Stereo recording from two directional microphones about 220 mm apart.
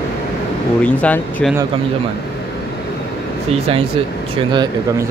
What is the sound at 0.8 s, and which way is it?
Speech, 5° left (ahead or behind).